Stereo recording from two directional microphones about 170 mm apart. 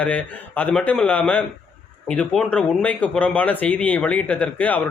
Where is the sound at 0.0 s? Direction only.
10° left (ahead or behind).